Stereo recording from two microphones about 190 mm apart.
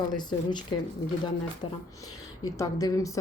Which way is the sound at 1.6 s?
25° left (ahead or behind).